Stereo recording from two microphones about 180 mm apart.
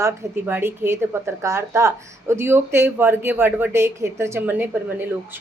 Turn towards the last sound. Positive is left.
turn(degrees=-10)  # may be behind; listen again after turning